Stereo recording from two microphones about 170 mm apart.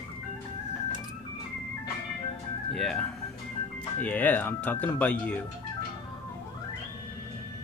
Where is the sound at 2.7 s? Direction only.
Centre (ahead or behind).